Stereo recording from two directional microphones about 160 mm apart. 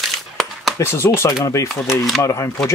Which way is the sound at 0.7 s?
15° left (ahead or behind).